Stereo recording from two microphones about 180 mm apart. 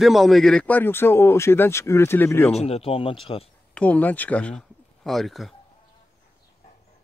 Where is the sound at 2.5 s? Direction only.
35° left (ahead or behind).